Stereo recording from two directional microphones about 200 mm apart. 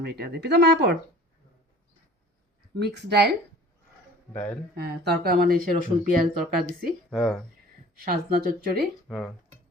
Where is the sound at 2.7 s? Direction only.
55° right (ahead or behind).